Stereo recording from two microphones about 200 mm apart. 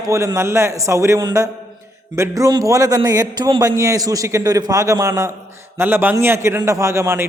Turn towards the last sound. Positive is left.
turn(degrees=-15)  # may be behind; listen again after turning